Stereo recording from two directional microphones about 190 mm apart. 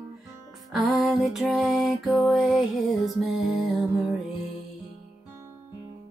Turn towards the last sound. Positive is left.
turn(degrees=0)  # may be behind; listen again after turning